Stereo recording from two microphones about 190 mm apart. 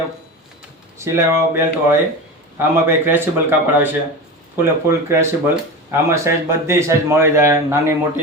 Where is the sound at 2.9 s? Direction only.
10° right (ahead or behind).